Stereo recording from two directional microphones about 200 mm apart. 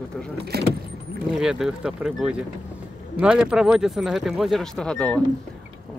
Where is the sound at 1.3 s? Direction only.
Centre (ahead or behind).